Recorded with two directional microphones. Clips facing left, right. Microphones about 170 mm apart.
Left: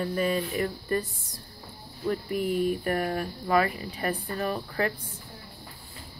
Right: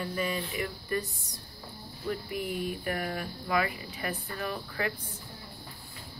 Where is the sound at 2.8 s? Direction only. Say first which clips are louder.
Left 5 dB; 40° left (ahead or behind).